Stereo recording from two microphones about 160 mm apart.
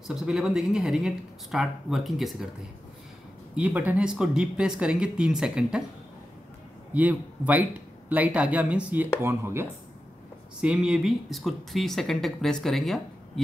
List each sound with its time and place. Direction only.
0.1 s speech: centre (ahead or behind)
3.5 s speech: 10° right (ahead or behind)
6.9 s a man's voice: 10° right (ahead or behind)
10.6 s speech: 5° right (ahead or behind)